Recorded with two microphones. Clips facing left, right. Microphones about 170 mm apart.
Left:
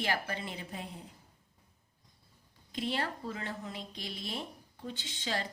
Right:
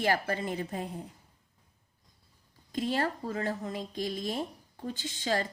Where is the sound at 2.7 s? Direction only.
45° right (ahead or behind).